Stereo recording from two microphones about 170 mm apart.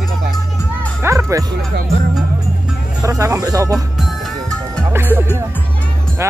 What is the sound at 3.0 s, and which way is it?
Speech, 20° right (ahead or behind).